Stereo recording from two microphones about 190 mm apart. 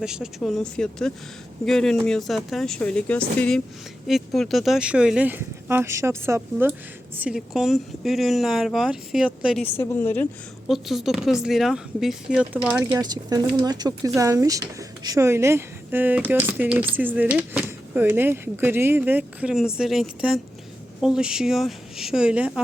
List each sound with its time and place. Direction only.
0.0 s speech: 5° right (ahead or behind)
9.7 s speech: 10° left (ahead or behind)
10.7 s speech: centre (ahead or behind)
12.8 s speech: 20° right (ahead or behind)